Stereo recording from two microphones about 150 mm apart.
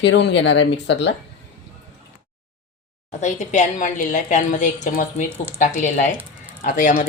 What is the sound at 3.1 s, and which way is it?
A woman's voice, 50° left (ahead or behind).